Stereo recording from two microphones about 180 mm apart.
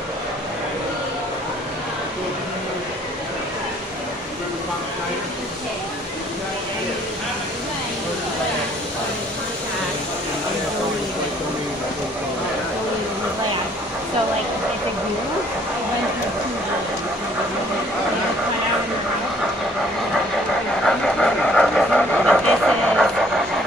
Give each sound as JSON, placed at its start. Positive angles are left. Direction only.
{"t": 20.8, "sound": "pant", "side_deg": 5}